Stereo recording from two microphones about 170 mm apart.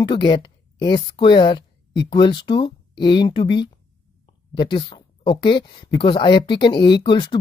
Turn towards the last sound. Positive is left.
turn(degrees=25)  # may be behind; listen again after turning